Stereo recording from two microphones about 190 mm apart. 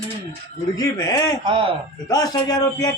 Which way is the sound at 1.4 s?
30° right (ahead or behind).